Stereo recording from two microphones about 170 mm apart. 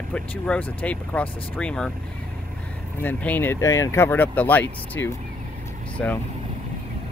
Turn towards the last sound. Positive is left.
turn(degrees=5)  # may be behind; listen again after turning